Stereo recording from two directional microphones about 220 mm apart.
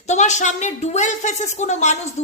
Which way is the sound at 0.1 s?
30° left (ahead or behind).